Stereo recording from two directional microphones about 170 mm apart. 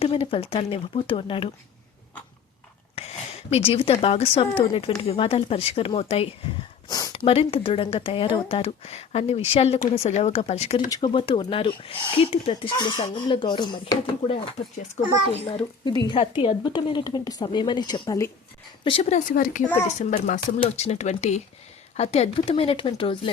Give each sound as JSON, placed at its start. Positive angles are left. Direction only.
{"t": 0.0, "sound": "speech", "side_deg": 35}
{"t": 3.0, "sound": "a sound", "side_deg": 35}
{"t": 3.5, "sound": "speech", "side_deg": 35}
{"t": 7.1, "sound": "speech", "side_deg": 35}
{"t": 10.8, "sound": "speech", "side_deg": 25}
{"t": 16.0, "sound": "speech", "side_deg": 30}
{"t": 18.9, "sound": "speech", "side_deg": 35}
{"t": 19.6, "sound": "speech", "side_deg": 10}
{"t": 20.0, "sound": "speech", "side_deg": 45}